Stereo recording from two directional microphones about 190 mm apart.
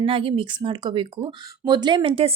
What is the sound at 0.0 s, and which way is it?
Speech, 30° right (ahead or behind).